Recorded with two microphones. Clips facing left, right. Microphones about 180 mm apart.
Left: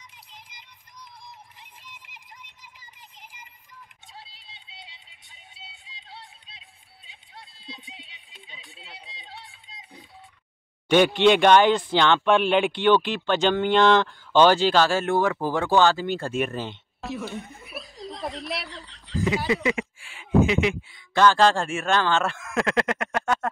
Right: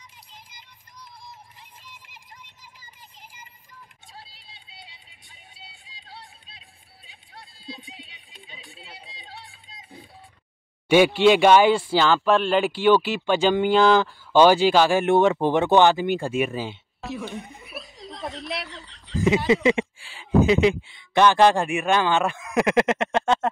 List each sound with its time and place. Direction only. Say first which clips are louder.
0.3 s music: even; 20° left (ahead or behind)
4.2 s vehicle: even; 20° left (ahead or behind)
5.5 s music: left 1 dB; 20° left (ahead or behind)
7.1 s run: right 1 dB; 20° left (ahead or behind)
8.5 s music: right 2 dB; 20° left (ahead or behind)
10.9 s speech: right 2 dB; 10° right (ahead or behind)
17.6 s snicker: left 1 dB; centre (ahead or behind)
19.2 s speech: right 5 dB; 25° right (ahead or behind)
21.1 s speech: right 2 dB; 20° right (ahead or behind)